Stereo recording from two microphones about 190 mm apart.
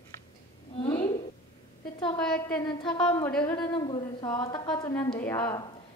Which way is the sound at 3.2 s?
10° left (ahead or behind).